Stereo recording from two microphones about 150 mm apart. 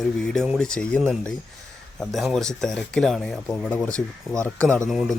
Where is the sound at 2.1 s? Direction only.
Centre (ahead or behind).